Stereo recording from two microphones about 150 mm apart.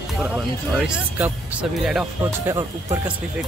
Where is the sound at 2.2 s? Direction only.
20° right (ahead or behind).